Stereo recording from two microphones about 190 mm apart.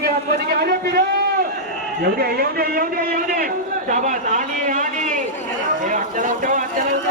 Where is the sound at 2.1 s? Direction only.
55° right (ahead or behind).